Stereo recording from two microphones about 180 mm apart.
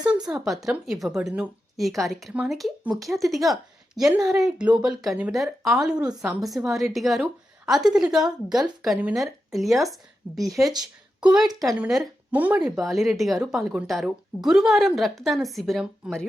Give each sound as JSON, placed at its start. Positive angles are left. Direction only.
{"t": 0.3, "sound": "a woman's voice", "side_deg": 0}
{"t": 10.6, "sound": "speech", "side_deg": -20}
{"t": 11.8, "sound": "a woman's voice", "side_deg": -5}